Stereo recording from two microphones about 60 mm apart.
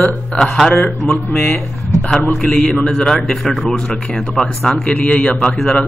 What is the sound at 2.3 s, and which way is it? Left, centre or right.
A man's voice, centre.